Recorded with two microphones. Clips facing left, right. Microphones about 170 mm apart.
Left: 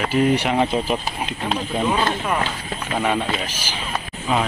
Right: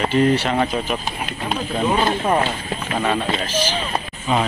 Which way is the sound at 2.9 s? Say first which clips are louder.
Even; 10° left (ahead or behind).